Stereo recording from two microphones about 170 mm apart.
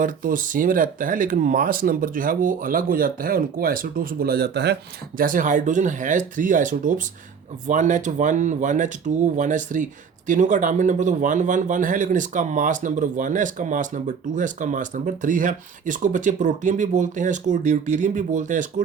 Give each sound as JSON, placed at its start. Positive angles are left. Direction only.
{"t": 0.0, "sound": "speech", "side_deg": -55}